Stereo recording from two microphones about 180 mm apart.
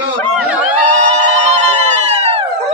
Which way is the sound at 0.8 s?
40° right (ahead or behind).